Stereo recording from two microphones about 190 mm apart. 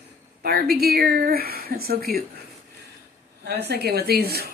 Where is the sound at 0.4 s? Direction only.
55° right (ahead or behind).